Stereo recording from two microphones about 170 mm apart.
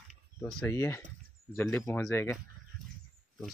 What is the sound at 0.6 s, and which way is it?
Speech, 15° left (ahead or behind).